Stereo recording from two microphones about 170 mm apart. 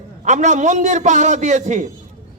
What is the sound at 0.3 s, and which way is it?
A man's voice, 45° right (ahead or behind).